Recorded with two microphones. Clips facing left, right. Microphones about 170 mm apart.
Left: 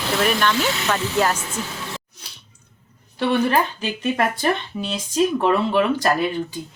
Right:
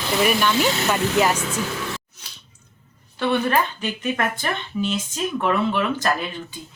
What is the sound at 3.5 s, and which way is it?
Speech, 35° left (ahead or behind).